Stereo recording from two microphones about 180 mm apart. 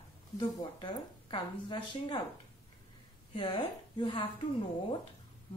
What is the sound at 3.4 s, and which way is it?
Speech, 25° left (ahead or behind).